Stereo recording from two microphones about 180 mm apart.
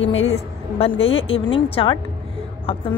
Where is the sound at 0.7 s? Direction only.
30° left (ahead or behind).